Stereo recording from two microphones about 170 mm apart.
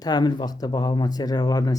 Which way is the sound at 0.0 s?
25° left (ahead or behind).